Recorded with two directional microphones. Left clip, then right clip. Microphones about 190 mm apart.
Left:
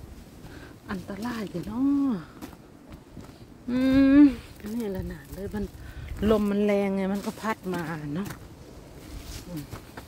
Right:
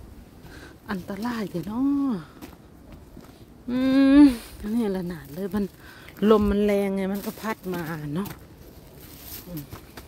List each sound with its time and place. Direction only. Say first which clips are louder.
0.6 s speech: right 4 dB; 40° right (ahead or behind)
3.6 s speech: right 1 dB; 25° right (ahead or behind)